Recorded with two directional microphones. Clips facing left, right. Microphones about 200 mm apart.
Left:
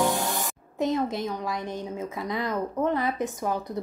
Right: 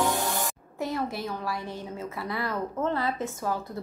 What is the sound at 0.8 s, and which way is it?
A woman's voice, 20° left (ahead or behind).